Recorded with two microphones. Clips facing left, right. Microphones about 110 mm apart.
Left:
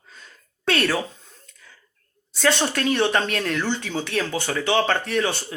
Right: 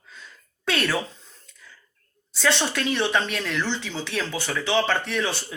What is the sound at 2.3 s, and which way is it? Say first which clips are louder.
Speech: left 2 dB; 50° left (ahead or behind).